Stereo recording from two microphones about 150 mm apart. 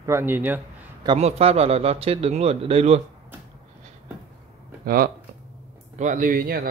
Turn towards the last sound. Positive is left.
turn(degrees=-80)